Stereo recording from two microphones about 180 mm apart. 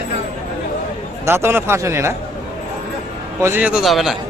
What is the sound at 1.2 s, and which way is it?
Speech, 15° right (ahead or behind).